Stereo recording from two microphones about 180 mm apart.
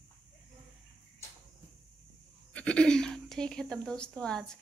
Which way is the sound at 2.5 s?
5° left (ahead or behind).